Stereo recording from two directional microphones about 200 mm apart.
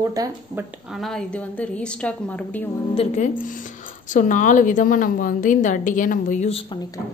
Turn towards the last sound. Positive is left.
turn(degrees=30)  # may be behind; listen again after turning